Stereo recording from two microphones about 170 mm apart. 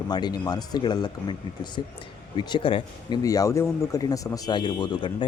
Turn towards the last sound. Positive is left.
turn(degrees=25)  # may be behind; listen again after turning